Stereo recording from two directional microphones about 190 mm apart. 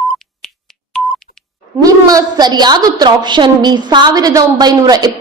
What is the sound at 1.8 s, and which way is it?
A woman's voice, 20° right (ahead or behind).